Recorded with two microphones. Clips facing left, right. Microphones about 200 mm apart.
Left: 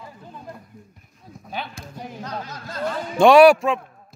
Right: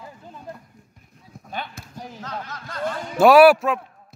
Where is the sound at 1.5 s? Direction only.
5° left (ahead or behind).